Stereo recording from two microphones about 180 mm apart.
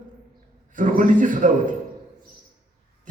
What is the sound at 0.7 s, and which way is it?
Speech, 45° right (ahead or behind).